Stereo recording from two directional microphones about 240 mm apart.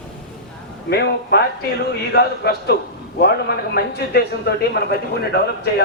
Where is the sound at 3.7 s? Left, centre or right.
Left.